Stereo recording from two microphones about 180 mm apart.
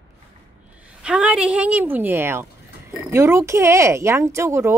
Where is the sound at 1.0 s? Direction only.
5° right (ahead or behind).